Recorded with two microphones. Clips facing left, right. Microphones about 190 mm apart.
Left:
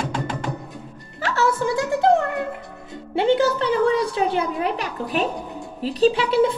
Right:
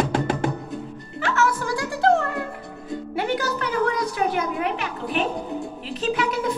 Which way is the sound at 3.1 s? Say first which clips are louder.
Left 8 dB; 25° left (ahead or behind).